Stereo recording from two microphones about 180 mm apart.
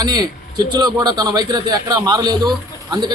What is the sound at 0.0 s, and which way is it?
A man's voice, 20° right (ahead or behind).